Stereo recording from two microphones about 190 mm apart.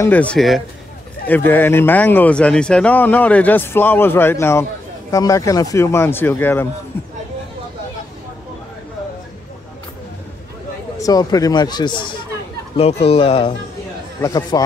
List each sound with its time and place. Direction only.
0.0 s speech: 10° left (ahead or behind)
11.0 s speech: 20° left (ahead or behind)